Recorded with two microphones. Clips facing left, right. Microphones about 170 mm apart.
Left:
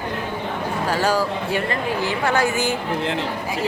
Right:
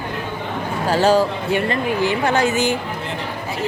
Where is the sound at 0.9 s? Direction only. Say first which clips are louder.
Right 6 dB; 25° right (ahead or behind).